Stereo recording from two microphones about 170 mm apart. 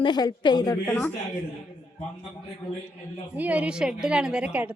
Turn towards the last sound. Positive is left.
turn(degrees=-5)  # may be behind; listen again after turning